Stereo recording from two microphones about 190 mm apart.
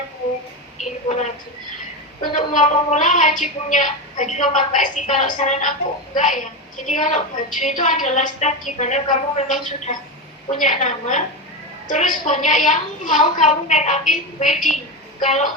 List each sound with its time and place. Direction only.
1.0 s a woman's voice: 35° left (ahead or behind)